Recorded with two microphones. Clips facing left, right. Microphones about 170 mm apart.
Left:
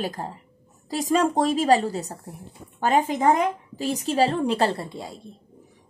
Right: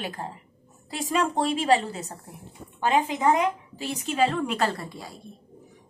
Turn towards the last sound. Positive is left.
turn(degrees=25)  # may be behind; listen again after turning